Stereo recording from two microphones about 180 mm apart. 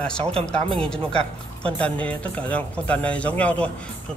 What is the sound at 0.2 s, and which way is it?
Speech, 35° right (ahead or behind).